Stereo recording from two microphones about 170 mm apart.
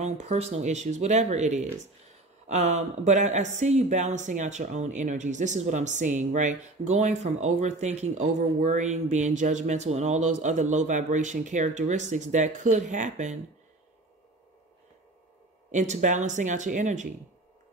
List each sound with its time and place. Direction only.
0.0 s speech: 40° right (ahead or behind)
15.7 s speech: 45° right (ahead or behind)